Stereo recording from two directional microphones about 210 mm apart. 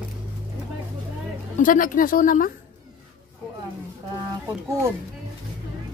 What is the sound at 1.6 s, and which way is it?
Speech, 40° left (ahead or behind).